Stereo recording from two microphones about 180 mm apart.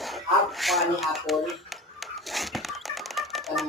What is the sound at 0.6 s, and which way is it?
Speech, centre (ahead or behind).